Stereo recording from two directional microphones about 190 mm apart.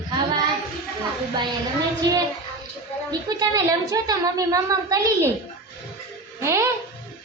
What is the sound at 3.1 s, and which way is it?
A woman's voice, 20° right (ahead or behind).